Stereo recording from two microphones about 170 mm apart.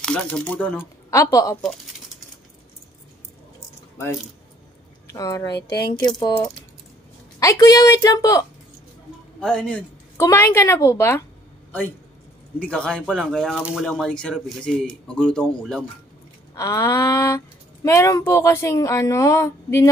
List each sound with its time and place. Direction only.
0.0 s speech: 5° left (ahead or behind)
5.0 s speech: 20° left (ahead or behind)
5.6 s speech: 75° left (ahead or behind)
5.9 s a woman's voice: 25° left (ahead or behind)
7.3 s a woman's voice: 20° left (ahead or behind)
9.4 s speech: 5° left (ahead or behind)
12.5 s speech: 5° left (ahead or behind)
16.5 s a woman's voice: 20° left (ahead or behind)